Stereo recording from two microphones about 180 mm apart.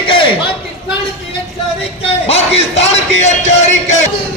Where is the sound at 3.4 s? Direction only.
40° left (ahead or behind).